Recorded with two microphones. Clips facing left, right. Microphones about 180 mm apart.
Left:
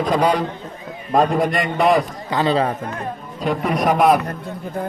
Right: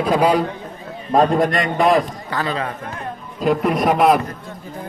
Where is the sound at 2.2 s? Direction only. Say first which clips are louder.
Left 4 dB; 20° left (ahead or behind).